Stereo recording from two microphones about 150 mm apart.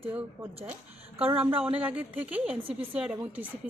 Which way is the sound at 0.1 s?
10° right (ahead or behind).